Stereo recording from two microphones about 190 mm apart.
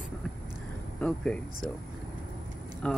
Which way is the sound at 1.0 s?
5° left (ahead or behind).